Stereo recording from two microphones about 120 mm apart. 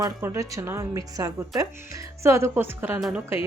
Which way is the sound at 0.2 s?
25° right (ahead or behind).